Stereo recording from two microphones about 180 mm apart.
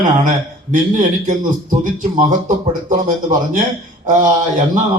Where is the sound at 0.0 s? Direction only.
45° right (ahead or behind).